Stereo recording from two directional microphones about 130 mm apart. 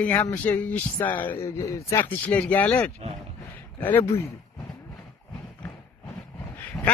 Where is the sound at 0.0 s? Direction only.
10° left (ahead or behind).